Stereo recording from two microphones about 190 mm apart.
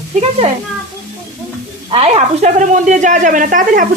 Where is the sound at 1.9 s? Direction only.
35° right (ahead or behind).